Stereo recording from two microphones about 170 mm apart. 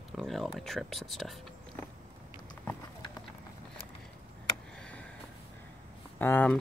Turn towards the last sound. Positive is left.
turn(degrees=10)  # may be behind; listen again after turning